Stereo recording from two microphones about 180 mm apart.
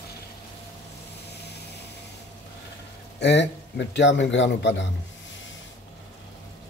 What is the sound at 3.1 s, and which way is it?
A man's voice, 70° left (ahead or behind).